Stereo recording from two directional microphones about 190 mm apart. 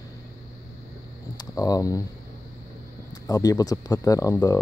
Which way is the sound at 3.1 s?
20° left (ahead or behind).